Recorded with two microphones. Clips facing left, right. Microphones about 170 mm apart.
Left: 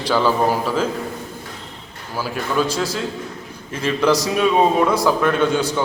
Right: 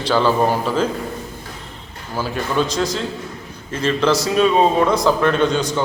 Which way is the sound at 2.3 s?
5° left (ahead or behind).